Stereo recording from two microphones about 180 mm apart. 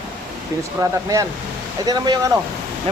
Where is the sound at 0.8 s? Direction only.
20° right (ahead or behind).